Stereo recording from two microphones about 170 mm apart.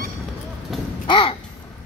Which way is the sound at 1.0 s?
30° left (ahead or behind).